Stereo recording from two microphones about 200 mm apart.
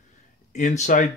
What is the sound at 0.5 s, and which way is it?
Speech, 35° left (ahead or behind).